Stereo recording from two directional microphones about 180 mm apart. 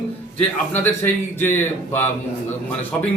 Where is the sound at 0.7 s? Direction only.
10° left (ahead or behind).